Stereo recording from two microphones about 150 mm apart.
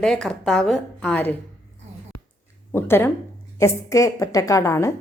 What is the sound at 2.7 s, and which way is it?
A woman's voice, 15° left (ahead or behind).